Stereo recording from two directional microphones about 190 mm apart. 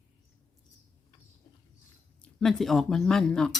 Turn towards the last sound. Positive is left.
turn(degrees=5)  # may be behind; listen again after turning